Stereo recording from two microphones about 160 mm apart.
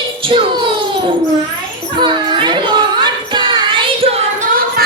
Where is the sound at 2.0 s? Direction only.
30° right (ahead or behind).